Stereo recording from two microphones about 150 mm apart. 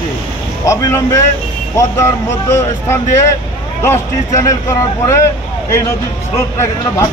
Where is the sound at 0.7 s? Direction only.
20° left (ahead or behind).